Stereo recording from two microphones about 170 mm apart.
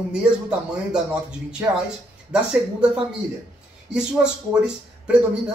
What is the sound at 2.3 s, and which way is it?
Speech, 5° right (ahead or behind).